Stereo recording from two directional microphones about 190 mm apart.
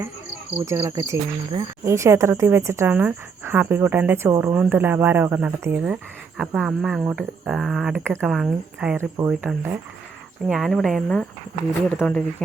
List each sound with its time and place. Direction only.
0.6 s speech: 15° right (ahead or behind); by 12.2 s 5° left (ahead or behind)